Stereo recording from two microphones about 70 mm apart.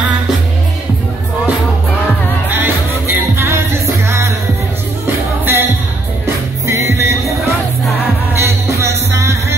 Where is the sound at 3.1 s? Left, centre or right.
Right.